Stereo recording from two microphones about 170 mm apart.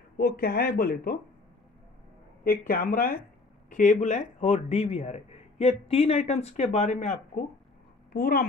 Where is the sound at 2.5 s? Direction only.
60° left (ahead or behind); by 7.2 s 45° left (ahead or behind).